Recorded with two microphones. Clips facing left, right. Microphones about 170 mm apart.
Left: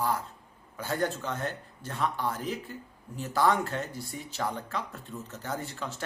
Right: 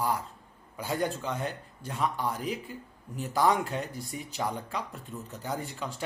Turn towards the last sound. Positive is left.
turn(degrees=-10)  # may be behind; listen again after turning